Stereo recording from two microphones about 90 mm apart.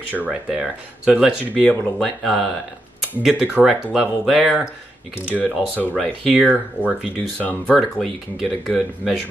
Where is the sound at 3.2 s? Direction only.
10° right (ahead or behind).